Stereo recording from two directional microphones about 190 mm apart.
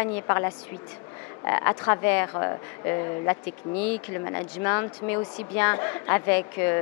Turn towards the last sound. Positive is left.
turn(degrees=15)  # may be behind; listen again after turning